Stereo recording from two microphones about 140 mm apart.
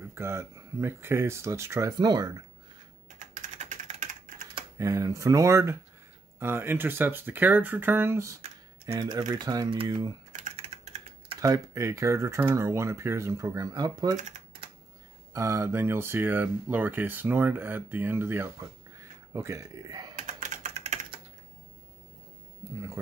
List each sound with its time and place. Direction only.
0.1 s speech: 20° right (ahead or behind)
3.2 s typing: 60° right (ahead or behind)
4.7 s speech: 25° right (ahead or behind)
10.5 s typing: 45° right (ahead or behind)
11.3 s speech: 25° right (ahead or behind)
15.3 s speech: 20° right (ahead or behind)
20.2 s typing: 60° right (ahead or behind)